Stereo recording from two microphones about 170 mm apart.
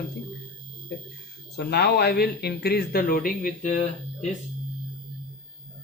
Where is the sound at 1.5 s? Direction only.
75° left (ahead or behind); by 4.3 s 45° left (ahead or behind).